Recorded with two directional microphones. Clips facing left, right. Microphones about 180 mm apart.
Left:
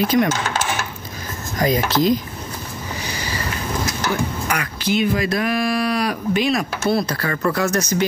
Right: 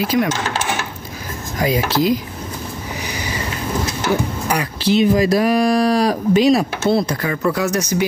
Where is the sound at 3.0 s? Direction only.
15° right (ahead or behind).